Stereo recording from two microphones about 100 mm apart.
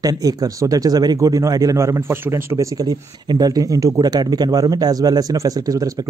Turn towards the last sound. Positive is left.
turn(degrees=-35)  # may be behind; listen again after turning